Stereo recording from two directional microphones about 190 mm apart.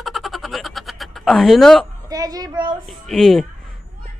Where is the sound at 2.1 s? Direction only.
20° right (ahead or behind).